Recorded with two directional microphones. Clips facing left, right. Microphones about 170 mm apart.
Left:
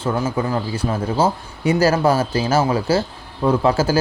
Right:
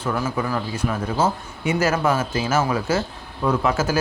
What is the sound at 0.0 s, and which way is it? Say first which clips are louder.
A man's voice: left 3 dB; 25° left (ahead or behind).